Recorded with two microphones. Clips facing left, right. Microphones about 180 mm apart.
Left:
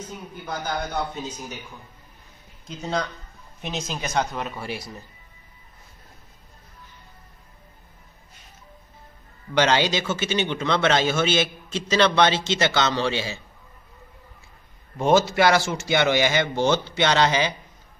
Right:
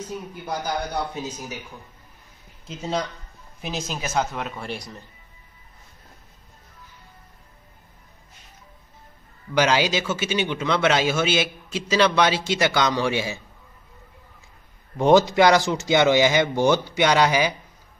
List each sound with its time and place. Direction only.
0.5 s a man's voice: 10° right (ahead or behind)
2.6 s speech: 5° right (ahead or behind)
9.5 s a man's voice: 10° right (ahead or behind)
15.0 s a man's voice: 15° right (ahead or behind)